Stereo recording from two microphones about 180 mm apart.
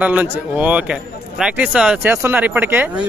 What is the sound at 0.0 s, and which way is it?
Speech, 10° right (ahead or behind).